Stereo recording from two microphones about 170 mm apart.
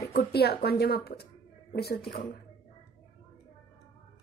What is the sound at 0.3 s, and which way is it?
A woman's voice, 70° left (ahead or behind).